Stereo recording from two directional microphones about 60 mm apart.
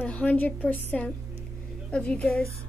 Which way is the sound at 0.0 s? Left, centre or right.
Left.